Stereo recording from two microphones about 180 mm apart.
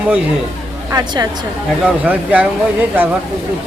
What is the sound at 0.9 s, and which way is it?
Speech, 20° right (ahead or behind).